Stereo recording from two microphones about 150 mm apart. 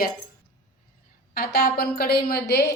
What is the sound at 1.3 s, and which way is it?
A woman's voice, 85° left.